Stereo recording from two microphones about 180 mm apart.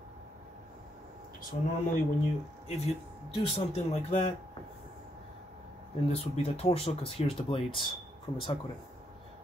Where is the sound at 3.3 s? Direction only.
30° left (ahead or behind).